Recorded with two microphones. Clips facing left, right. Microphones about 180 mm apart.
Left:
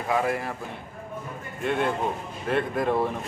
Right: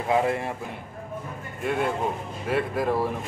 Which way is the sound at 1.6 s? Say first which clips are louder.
Even; 5° right (ahead or behind).